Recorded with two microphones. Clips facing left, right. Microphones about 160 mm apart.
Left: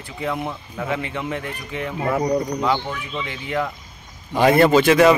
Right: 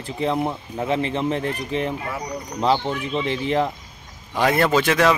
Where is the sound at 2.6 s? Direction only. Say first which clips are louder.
Right 2 dB; 30° right (ahead or behind).